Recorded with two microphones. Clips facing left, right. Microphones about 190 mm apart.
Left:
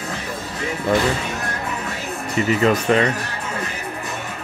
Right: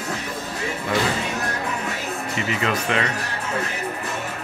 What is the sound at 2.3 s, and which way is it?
Speech, 40° left (ahead or behind).